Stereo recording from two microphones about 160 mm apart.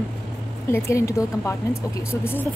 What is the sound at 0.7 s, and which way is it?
A woman's voice, 20° left (ahead or behind).